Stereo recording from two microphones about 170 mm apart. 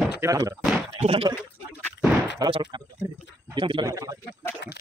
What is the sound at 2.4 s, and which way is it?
A man's voice, 25° right (ahead or behind).